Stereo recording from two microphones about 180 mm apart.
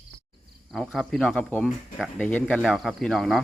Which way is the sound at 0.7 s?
Centre (ahead or behind).